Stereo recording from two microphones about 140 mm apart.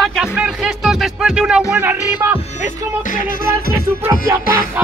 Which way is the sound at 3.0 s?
70° left (ahead or behind).